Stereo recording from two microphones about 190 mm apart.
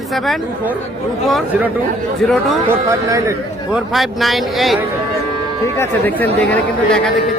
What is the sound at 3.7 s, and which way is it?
A man's voice, centre (ahead or behind).